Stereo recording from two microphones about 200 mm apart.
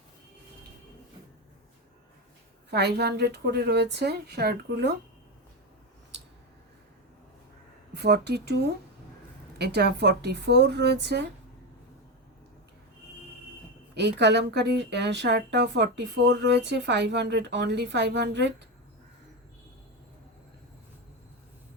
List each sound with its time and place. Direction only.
2.6 s a woman's voice: 55° right (ahead or behind)
7.9 s a woman's voice: 55° right (ahead or behind)
13.9 s a woman's voice: 60° right (ahead or behind)